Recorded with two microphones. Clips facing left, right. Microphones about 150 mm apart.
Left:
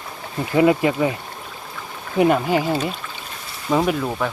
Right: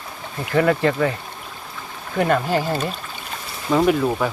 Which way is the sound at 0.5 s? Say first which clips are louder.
Left 1 dB; 15° left (ahead or behind).